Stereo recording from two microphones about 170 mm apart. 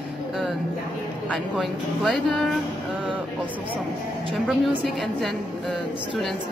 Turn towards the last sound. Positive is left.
turn(degrees=0)  # may be behind; listen again after turning